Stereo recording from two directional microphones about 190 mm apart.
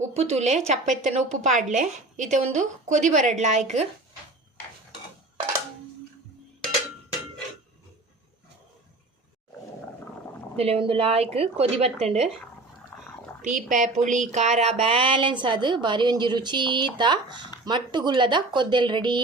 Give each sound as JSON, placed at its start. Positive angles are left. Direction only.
{"t": 0.0, "sound": "a woman's voice", "side_deg": -35}
{"t": 10.6, "sound": "a woman's voice", "side_deg": -30}
{"t": 12.9, "sound": "a sound", "side_deg": 10}
{"t": 13.4, "sound": "a woman's voice", "side_deg": -40}